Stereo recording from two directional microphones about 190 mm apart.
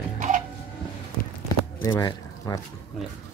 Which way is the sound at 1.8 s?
15° left (ahead or behind).